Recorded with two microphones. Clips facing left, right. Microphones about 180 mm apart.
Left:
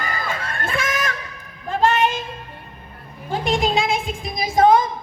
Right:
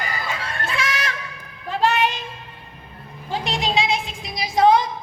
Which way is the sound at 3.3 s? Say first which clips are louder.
Left 3 dB; 50° left (ahead or behind).